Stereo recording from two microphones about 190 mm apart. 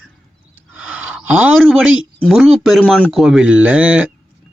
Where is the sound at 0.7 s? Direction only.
5° right (ahead or behind).